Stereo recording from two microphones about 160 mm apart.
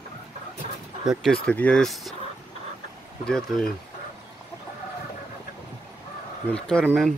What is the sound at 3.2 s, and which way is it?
Speech, 5° left (ahead or behind).